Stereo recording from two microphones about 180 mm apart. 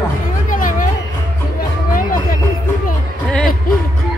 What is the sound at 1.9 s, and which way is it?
Music, 50° left (ahead or behind).